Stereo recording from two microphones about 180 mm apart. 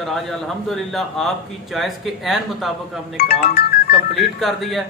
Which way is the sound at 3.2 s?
55° left (ahead or behind).